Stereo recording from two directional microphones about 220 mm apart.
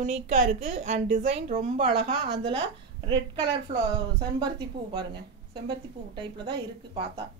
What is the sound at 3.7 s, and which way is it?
Speech, 20° right (ahead or behind).